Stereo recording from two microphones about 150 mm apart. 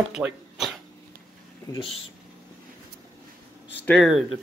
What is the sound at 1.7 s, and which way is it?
Speech, 35° left (ahead or behind).